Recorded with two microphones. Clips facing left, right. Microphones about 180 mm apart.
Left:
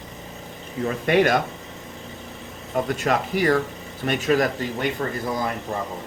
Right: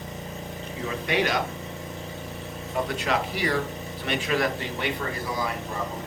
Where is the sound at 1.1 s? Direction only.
55° left (ahead or behind).